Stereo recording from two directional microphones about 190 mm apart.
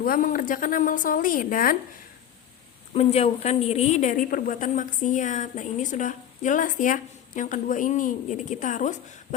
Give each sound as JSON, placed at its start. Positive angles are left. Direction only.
{"t": 0.0, "sound": "a woman's voice", "side_deg": 50}
{"t": 2.9, "sound": "a woman's voice", "side_deg": 35}